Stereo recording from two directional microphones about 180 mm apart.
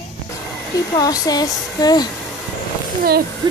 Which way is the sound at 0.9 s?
20° left (ahead or behind).